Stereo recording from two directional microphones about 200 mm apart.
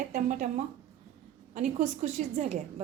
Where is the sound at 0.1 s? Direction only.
40° right (ahead or behind).